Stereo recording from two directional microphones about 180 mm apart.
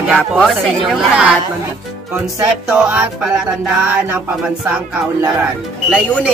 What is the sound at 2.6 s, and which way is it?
Speech, 5° right (ahead or behind).